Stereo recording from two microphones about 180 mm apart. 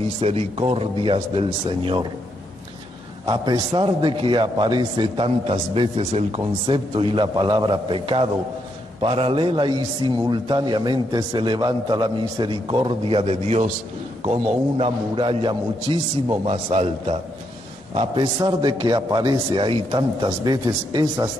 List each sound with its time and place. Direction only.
0.2 s a man's voice: 35° right (ahead or behind)
3.3 s a man's voice: 25° right (ahead or behind)